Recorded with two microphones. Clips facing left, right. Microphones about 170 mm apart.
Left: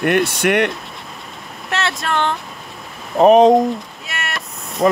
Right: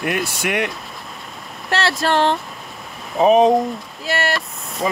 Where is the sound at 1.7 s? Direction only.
35° right (ahead or behind).